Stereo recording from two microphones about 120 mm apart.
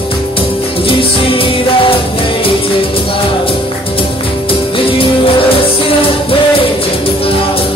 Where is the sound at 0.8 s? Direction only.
45° left (ahead or behind).